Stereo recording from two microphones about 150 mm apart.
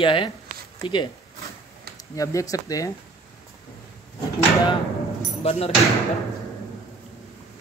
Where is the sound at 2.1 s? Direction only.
20° left (ahead or behind).